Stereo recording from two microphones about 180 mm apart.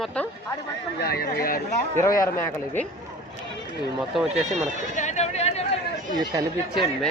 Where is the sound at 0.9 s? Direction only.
60° left (ahead or behind).